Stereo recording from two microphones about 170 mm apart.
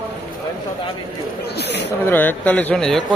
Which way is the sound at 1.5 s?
85° left.